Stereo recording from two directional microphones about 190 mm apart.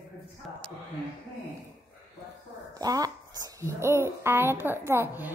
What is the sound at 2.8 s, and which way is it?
A woman's voice, 20° right (ahead or behind).